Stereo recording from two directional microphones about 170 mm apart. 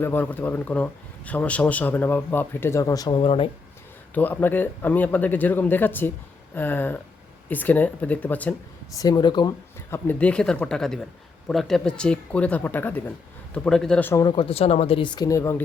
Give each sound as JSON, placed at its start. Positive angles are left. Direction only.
{"t": 0.0, "sound": "speech", "side_deg": 10}
{"t": 3.2, "sound": "speech", "side_deg": 35}
{"t": 4.1, "sound": "speech", "side_deg": 10}
{"t": 9.0, "sound": "speech", "side_deg": 25}
{"t": 9.9, "sound": "speech", "side_deg": 10}
{"t": 14.3, "sound": "speech", "side_deg": 35}